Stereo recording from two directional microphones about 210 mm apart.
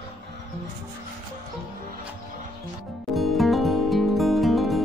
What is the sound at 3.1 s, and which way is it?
Music, centre (ahead or behind).